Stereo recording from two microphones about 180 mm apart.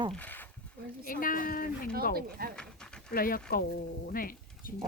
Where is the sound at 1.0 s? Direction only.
50° left (ahead or behind).